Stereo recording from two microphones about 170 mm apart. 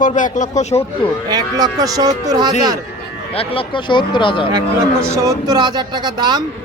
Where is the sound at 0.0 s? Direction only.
50° left (ahead or behind).